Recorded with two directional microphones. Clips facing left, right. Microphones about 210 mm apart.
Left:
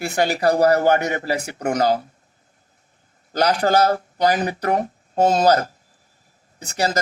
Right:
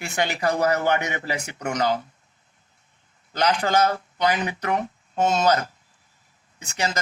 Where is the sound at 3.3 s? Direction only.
40° left (ahead or behind).